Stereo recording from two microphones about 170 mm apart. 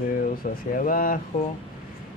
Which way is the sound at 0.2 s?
55° left (ahead or behind).